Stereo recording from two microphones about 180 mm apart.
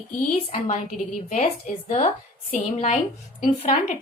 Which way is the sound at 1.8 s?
40° left (ahead or behind).